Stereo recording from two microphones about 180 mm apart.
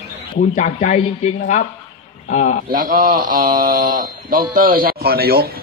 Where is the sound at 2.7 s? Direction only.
50° right (ahead or behind).